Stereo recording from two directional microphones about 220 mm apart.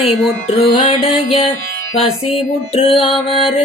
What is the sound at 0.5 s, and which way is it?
Music, 25° left (ahead or behind).